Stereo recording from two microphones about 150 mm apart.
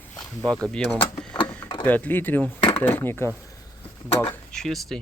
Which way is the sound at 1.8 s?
10° left (ahead or behind).